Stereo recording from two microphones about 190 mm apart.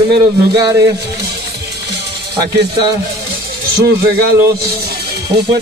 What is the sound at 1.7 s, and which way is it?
Music, 60° right (ahead or behind).